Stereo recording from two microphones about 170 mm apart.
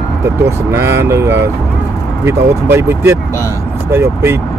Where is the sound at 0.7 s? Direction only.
15° right (ahead or behind).